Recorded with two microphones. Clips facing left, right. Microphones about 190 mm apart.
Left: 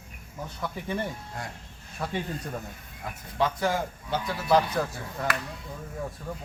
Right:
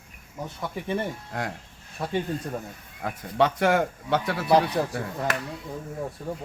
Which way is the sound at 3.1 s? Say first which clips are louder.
Right 5 dB; 65° right (ahead or behind).